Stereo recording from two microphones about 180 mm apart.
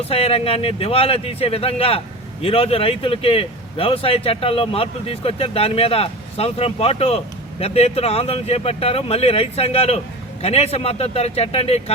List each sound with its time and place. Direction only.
0.0 s speech: 35° left (ahead or behind)